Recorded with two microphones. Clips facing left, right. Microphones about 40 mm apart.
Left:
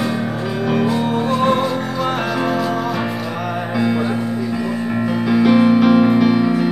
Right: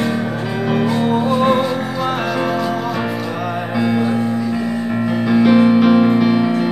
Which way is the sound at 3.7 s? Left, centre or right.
Centre.